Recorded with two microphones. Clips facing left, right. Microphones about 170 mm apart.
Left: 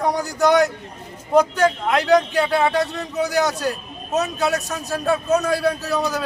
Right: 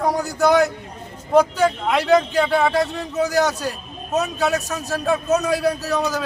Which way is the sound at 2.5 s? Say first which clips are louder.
Even; 5° left (ahead or behind).